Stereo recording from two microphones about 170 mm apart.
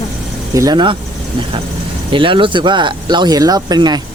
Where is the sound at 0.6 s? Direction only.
25° right (ahead or behind).